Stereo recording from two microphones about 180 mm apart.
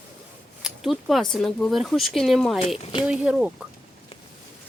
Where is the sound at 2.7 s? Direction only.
35° left (ahead or behind).